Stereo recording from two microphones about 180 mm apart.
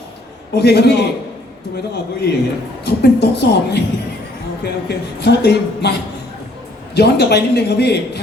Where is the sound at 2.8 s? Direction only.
65° left (ahead or behind).